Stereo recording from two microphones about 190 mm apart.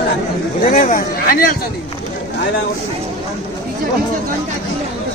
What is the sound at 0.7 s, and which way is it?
Speech, 45° left (ahead or behind).